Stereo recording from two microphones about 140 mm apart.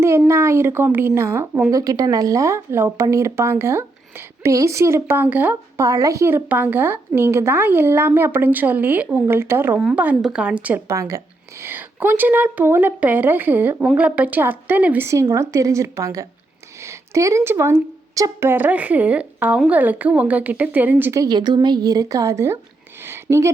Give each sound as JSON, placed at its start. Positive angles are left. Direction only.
{"t": 0.3, "sound": "a woman's voice", "side_deg": -20}
{"t": 10.9, "sound": "a woman's voice", "side_deg": -20}
{"t": 23.0, "sound": "a sound", "side_deg": -20}